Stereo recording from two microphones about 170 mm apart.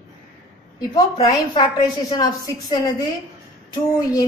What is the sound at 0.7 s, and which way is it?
A woman's voice, 25° left (ahead or behind).